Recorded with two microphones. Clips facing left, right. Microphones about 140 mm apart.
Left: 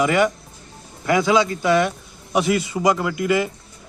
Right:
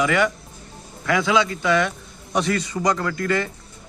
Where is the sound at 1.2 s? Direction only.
5° left (ahead or behind).